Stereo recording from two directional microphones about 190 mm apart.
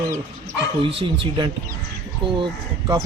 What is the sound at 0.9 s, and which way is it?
Speech, 25° right (ahead or behind).